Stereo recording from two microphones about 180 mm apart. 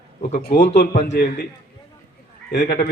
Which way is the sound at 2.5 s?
65° left (ahead or behind).